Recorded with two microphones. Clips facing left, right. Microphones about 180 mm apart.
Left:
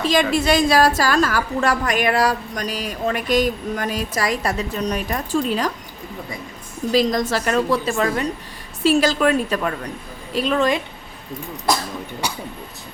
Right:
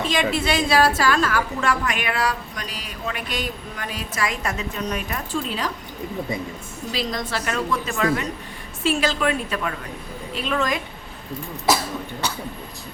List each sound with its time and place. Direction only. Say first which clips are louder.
0.1 s a woman's voice: left 6 dB; 40° left (ahead or behind)
6.9 s a woman's voice: left 9 dB; 45° left (ahead or behind)
11.7 s cough: even; 5° right (ahead or behind)
12.2 s speech: left 1 dB; 15° left (ahead or behind)